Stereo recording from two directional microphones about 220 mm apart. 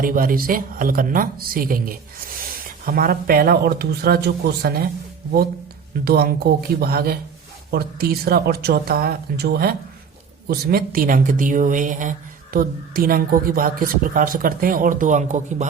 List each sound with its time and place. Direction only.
0.0 s a woman's voice: 40° right (ahead or behind)
6.1 s a woman's voice: 45° right (ahead or behind)